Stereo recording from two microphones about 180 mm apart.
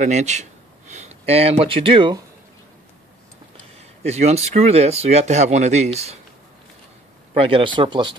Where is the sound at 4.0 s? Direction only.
35° right (ahead or behind).